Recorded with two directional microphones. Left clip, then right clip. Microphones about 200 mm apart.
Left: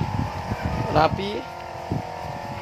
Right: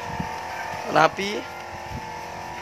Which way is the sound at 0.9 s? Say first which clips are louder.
Right 2 dB; 10° right (ahead or behind).